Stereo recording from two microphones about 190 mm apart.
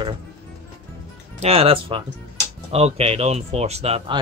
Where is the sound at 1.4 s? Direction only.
30° right (ahead or behind).